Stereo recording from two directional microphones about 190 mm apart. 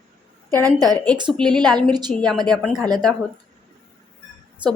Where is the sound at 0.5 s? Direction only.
20° right (ahead or behind).